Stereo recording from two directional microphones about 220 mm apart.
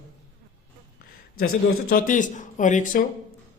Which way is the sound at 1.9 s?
35° left (ahead or behind).